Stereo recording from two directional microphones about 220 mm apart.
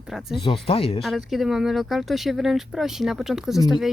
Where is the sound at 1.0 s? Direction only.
Centre (ahead or behind).